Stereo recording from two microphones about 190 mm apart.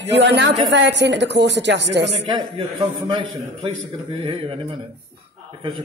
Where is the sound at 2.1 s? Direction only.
25° right (ahead or behind).